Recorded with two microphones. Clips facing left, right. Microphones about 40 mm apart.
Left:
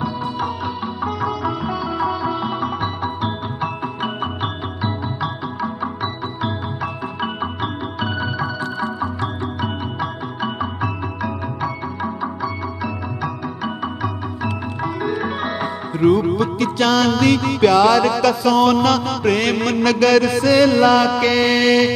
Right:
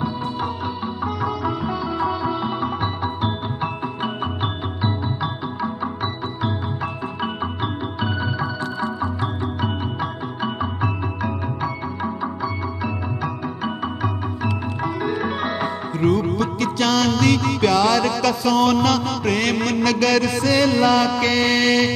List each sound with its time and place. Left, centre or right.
1.0 s music: centre
4.8 s music: centre
7.6 s music: centre
14.0 s music: centre
14.9 s music: centre